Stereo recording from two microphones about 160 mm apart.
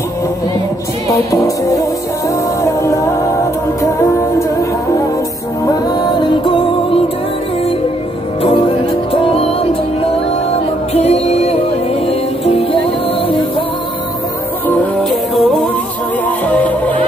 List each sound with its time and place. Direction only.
1.0 s music: 20° left (ahead or behind)
5.7 s music: 25° left (ahead or behind)
8.4 s music: 35° left (ahead or behind)
10.9 s music: 40° left (ahead or behind)
16.3 s music: 10° left (ahead or behind)